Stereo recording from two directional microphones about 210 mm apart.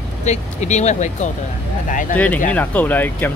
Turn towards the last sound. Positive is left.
turn(degrees=10)  # may be behind; listen again after turning